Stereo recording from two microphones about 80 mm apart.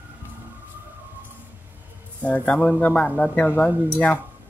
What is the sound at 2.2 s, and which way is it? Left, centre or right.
Speech, centre.